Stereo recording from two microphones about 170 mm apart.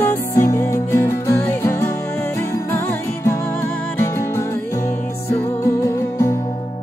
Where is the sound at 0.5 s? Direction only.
20° left (ahead or behind).